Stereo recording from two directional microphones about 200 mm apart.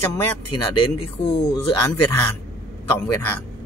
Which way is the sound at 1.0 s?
30° left (ahead or behind).